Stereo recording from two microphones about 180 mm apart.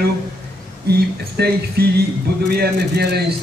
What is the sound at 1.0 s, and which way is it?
A man's voice, 65° right (ahead or behind).